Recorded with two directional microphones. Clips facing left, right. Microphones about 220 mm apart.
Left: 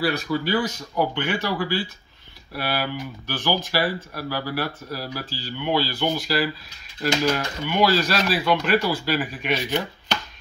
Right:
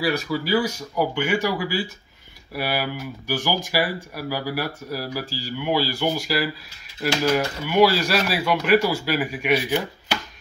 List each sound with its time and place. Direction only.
0.0 s speech: 10° right (ahead or behind)